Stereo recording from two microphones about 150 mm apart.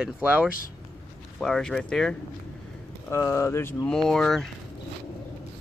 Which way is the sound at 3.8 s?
5° left (ahead or behind).